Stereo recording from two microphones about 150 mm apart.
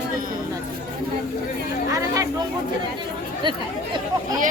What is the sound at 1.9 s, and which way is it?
Speech, 20° right (ahead or behind).